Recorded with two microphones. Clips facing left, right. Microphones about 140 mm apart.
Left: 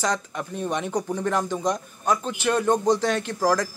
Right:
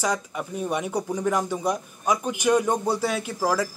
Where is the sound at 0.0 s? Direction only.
10° right (ahead or behind).